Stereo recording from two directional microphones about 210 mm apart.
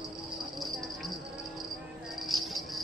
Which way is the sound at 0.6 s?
Centre (ahead or behind).